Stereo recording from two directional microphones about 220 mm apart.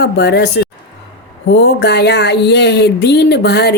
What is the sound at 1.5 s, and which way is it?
Speech, 50° left (ahead or behind).